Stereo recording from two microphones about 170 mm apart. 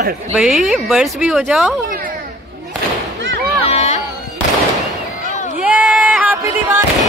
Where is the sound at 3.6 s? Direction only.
35° left (ahead or behind).